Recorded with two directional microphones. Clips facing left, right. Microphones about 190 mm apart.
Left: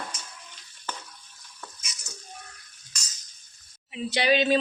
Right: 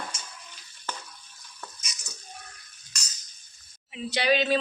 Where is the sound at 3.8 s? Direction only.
5° left (ahead or behind).